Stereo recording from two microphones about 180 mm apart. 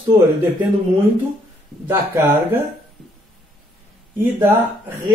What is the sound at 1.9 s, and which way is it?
Speech, 15° right (ahead or behind).